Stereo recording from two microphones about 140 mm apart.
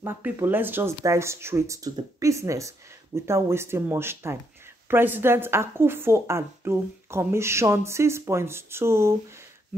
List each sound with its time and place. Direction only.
0.0 s a woman's voice: 15° right (ahead or behind)